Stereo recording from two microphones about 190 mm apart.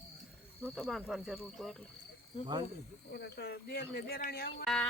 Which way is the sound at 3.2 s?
60° left (ahead or behind).